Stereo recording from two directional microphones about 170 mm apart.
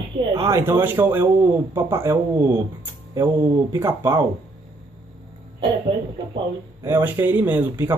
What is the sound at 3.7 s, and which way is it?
Speech, 15° right (ahead or behind).